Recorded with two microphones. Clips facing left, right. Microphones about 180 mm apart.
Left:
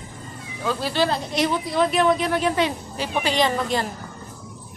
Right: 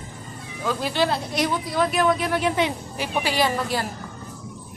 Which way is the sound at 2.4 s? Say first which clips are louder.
Left 1 dB; 15° right (ahead or behind).